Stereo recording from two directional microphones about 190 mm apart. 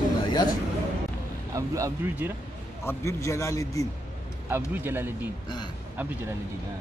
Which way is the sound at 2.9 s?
15° left (ahead or behind).